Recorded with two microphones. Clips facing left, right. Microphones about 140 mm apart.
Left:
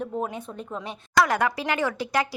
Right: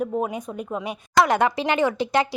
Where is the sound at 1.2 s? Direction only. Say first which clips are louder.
Right 3 dB; 25° right (ahead or behind).